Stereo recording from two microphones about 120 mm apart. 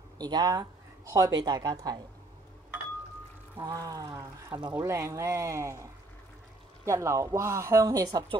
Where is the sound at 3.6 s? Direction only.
30° right (ahead or behind).